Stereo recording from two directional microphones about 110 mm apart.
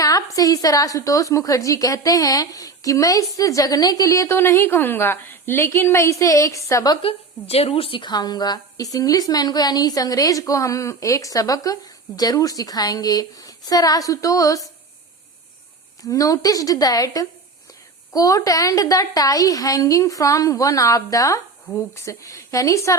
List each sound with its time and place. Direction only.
0.0 s speech: 35° left (ahead or behind)
6.9 s speech: 55° left (ahead or behind); by 14.7 s 30° left (ahead or behind)
16.0 s speech: 30° left (ahead or behind)